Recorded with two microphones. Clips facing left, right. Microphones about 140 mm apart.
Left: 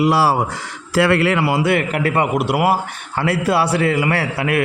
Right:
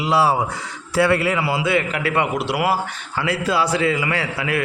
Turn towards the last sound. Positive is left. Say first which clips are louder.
# left 4 dB
turn(degrees=60)  # may be behind; listen again after turning